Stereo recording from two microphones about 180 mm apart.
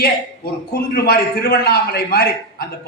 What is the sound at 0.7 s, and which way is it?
A man's voice, 60° left (ahead or behind).